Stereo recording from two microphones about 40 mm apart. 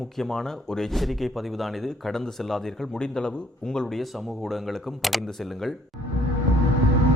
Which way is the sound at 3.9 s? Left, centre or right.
Centre.